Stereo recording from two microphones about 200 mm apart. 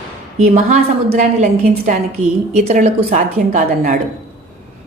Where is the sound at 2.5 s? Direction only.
35° right (ahead or behind).